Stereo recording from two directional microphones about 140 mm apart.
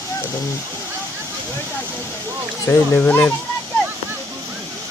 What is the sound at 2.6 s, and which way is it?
Speech, 15° left (ahead or behind).